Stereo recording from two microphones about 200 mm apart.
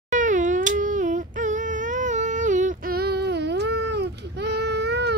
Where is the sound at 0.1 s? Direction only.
40° right (ahead or behind).